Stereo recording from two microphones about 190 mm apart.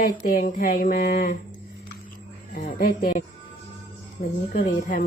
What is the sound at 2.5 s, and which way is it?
Speech, 50° left (ahead or behind).